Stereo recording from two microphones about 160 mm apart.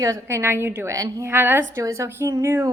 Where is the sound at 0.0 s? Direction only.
20° right (ahead or behind).